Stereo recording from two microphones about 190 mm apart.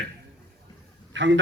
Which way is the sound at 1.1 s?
75° right (ahead or behind).